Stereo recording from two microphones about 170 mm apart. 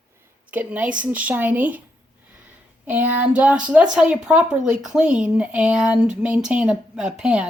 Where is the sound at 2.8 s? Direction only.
10° right (ahead or behind).